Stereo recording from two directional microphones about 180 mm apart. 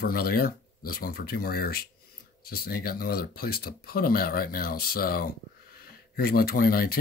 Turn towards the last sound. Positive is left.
turn(degrees=55)  # may be behind; listen again after turning